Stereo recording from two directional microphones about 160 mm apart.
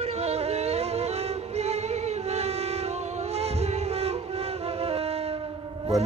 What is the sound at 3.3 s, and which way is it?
Music, 40° right (ahead or behind).